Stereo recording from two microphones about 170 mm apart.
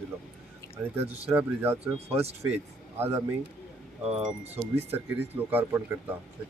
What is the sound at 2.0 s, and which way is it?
Speech, 35° right (ahead or behind).